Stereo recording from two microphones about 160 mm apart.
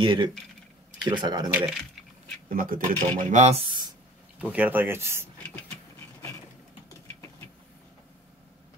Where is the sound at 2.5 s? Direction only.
60° right (ahead or behind).